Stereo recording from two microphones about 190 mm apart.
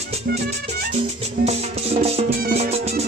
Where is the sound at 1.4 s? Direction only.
35° right (ahead or behind).